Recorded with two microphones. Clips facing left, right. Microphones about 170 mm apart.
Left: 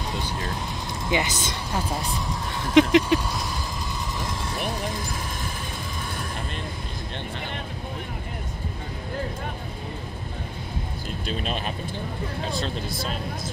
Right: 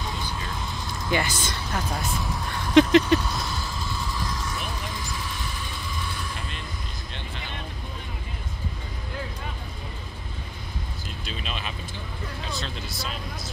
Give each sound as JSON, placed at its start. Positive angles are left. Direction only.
{"t": 1.0, "sound": "speech", "side_deg": 20}
{"t": 2.7, "sound": "a sound", "side_deg": 10}
{"t": 4.2, "sound": "vehicle", "side_deg": 25}
{"t": 4.6, "sound": "vehicle", "side_deg": 40}
{"t": 11.2, "sound": "vehicle", "side_deg": 45}